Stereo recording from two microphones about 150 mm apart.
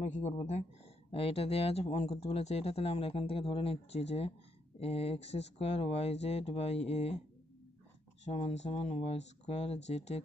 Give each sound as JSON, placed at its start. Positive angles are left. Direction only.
{"t": 0.0, "sound": "speech", "side_deg": 50}
{"t": 8.3, "sound": "speech", "side_deg": 45}